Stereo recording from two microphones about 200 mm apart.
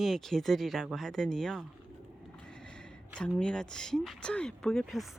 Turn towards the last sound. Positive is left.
turn(degrees=0)  # may be behind; listen again after turning